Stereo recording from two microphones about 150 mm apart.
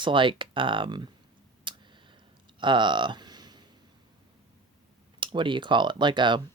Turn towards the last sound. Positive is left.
turn(degrees=-30)  # may be behind; listen again after turning